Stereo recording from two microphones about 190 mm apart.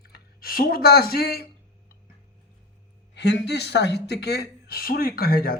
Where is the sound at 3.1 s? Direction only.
65° left (ahead or behind).